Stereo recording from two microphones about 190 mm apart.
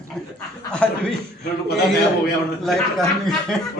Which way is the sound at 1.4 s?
55° left (ahead or behind).